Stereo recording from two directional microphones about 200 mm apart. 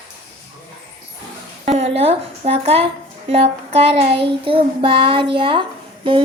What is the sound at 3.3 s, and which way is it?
Child singing, 30° right (ahead or behind).